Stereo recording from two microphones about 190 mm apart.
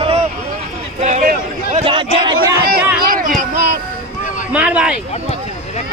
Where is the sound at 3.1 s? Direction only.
45° right (ahead or behind).